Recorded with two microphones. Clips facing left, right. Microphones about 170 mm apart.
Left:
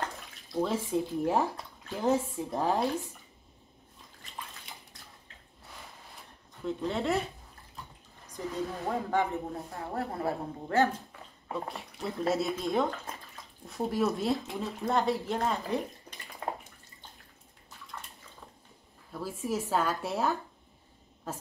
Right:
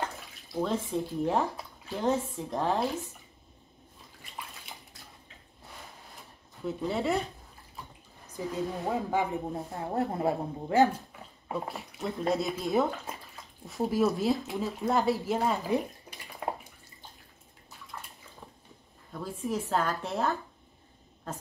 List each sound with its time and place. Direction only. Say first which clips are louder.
0.5 s speech: even; 5° left (ahead or behind)
6.6 s speech: right 1 dB; 5° right (ahead or behind)
8.4 s speech: right 2 dB; 10° right (ahead or behind)
11.4 s speech: right 2 dB; 5° right (ahead or behind)
17.9 s bathtub: right 1 dB; 5° right (ahead or behind)
19.1 s speech: even; 5° left (ahead or behind)